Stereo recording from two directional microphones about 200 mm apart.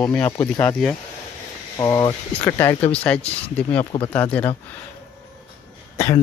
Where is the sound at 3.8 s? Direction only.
25° left (ahead or behind).